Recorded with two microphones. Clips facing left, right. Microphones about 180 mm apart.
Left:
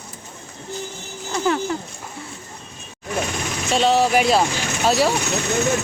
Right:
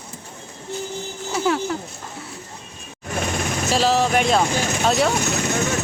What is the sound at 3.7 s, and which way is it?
Speech, centre (ahead or behind).